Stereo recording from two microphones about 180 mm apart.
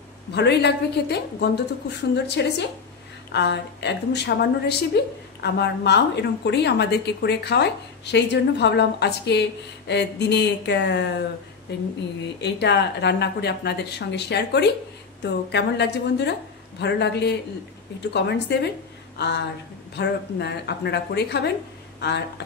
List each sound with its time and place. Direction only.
0.3 s a woman's voice: 70° left (ahead or behind)